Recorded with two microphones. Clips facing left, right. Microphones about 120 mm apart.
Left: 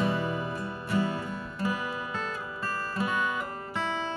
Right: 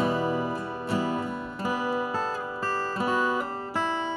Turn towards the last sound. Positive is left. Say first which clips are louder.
# right 4 dB
turn(degrees=-30)  # may be behind; listen again after turning